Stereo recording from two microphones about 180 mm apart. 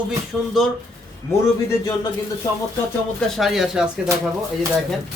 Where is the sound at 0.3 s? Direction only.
Centre (ahead or behind).